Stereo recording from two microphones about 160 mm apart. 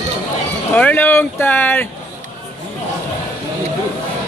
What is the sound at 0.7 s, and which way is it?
Speech, 10° left (ahead or behind).